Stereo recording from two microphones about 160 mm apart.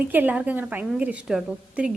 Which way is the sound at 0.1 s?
10° right (ahead or behind).